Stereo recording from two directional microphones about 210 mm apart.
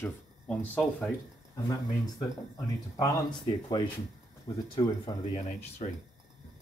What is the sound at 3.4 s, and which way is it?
Speech, 20° left (ahead or behind).